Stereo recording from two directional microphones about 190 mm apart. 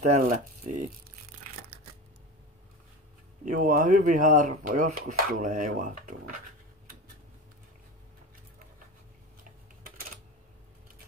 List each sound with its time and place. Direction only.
0.0 s speech: 45° right (ahead or behind)
3.4 s speech: 45° right (ahead or behind)
9.4 s typing: 50° right (ahead or behind)